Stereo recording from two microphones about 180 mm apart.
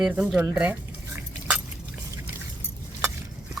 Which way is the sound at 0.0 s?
5° right (ahead or behind).